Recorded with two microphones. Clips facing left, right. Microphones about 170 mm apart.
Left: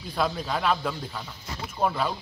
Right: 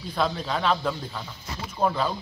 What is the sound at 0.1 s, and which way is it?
Speech, 5° left (ahead or behind).